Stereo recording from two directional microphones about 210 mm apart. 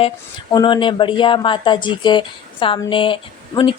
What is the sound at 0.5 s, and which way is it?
Speech, 20° left (ahead or behind).